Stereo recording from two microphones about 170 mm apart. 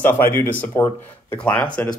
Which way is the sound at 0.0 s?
15° left (ahead or behind).